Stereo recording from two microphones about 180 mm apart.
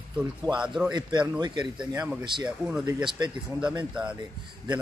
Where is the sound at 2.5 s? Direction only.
5° right (ahead or behind).